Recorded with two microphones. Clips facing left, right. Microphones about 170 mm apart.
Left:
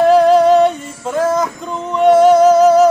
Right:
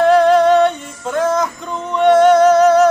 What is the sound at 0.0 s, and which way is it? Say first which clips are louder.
Music: left 1 dB; centre (ahead or behind).